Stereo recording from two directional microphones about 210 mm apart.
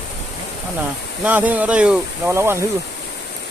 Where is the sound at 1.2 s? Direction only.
5° right (ahead or behind).